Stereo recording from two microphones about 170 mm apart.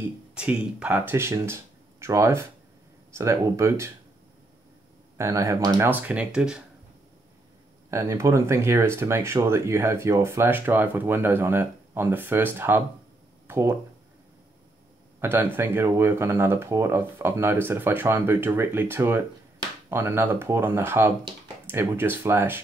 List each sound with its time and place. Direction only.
0.3 s speech: 5° right (ahead or behind)
5.1 s speech: 20° right (ahead or behind)
7.9 s speech: 20° right (ahead or behind)
15.1 s speech: 15° right (ahead or behind)